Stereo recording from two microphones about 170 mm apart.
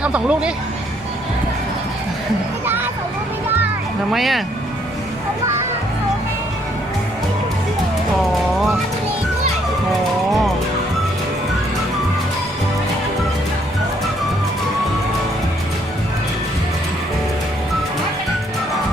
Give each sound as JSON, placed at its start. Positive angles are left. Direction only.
{"t": 0.0, "sound": "speech", "side_deg": -5}
{"t": 2.6, "sound": "a sound", "side_deg": -10}
{"t": 4.1, "sound": "speech", "side_deg": 0}